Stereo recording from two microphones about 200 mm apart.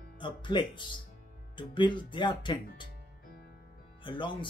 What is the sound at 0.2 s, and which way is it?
Speech, 20° left (ahead or behind).